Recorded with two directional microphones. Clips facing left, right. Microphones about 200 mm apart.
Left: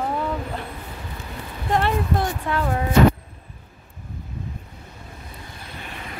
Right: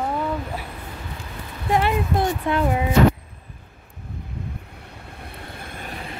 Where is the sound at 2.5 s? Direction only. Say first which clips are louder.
Right 2 dB; 15° right (ahead or behind).